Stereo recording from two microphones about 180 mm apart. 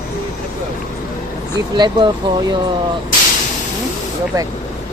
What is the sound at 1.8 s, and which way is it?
Speech, 25° right (ahead or behind).